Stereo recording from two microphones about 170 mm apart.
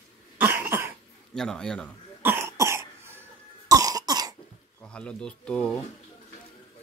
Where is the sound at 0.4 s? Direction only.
10° right (ahead or behind).